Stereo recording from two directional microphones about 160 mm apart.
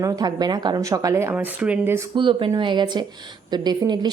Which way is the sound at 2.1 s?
30° right (ahead or behind).